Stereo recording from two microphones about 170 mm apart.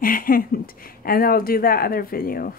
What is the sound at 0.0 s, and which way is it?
Speech, 55° left (ahead or behind).